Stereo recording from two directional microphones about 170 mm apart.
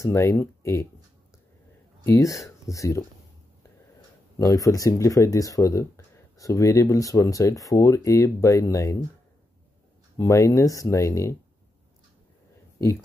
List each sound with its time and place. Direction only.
0.0 s speech: 15° left (ahead or behind)
2.0 s speech: 20° left (ahead or behind)
4.4 s speech: 20° left (ahead or behind)
10.1 s speech: 20° left (ahead or behind)